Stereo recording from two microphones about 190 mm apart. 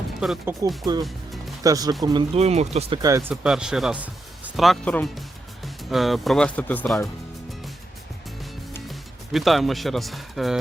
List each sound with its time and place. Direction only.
0.2 s speech: 5° right (ahead or behind)
1.6 s speech: 20° right (ahead or behind)
2.4 s speech: 35° right (ahead or behind)
3.0 s speech: 15° right (ahead or behind)
3.4 s speech: 5° right (ahead or behind)
8.9 s speech: centre (ahead or behind)